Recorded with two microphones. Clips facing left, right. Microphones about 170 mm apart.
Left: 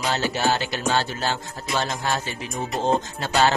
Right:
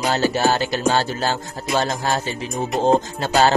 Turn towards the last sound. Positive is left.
turn(degrees=-40)  # may be behind; listen again after turning